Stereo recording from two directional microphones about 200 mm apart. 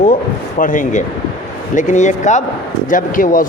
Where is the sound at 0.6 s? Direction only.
40° left (ahead or behind).